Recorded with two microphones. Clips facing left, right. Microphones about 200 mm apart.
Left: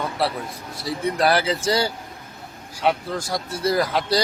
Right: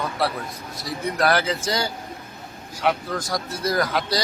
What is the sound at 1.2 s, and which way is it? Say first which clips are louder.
Speech: even; 30° left (ahead or behind).